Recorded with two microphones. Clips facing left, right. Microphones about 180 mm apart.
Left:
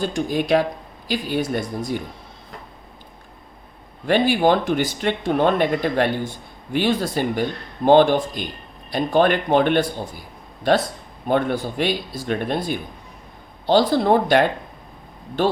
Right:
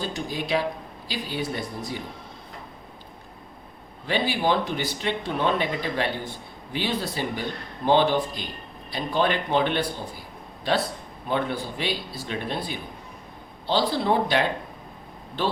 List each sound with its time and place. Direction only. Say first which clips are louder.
0.0 s speech: left 8 dB; 50° left (ahead or behind)
4.0 s speech: left 7 dB; 50° left (ahead or behind)